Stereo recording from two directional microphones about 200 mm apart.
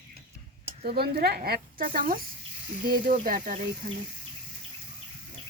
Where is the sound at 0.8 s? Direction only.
50° right (ahead or behind).